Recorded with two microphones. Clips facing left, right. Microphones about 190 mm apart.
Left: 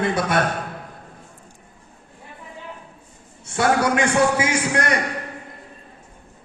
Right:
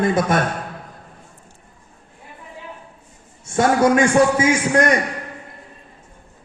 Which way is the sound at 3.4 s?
45° right (ahead or behind).